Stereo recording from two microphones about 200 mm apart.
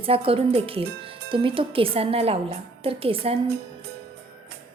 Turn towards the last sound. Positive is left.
turn(degrees=-30)  # may be behind; listen again after turning